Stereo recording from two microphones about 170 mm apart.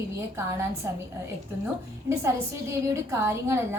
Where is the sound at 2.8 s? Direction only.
15° right (ahead or behind).